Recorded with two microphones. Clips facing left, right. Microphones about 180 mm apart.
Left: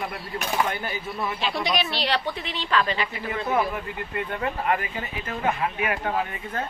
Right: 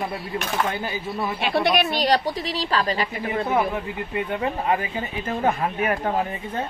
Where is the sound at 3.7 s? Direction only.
20° right (ahead or behind).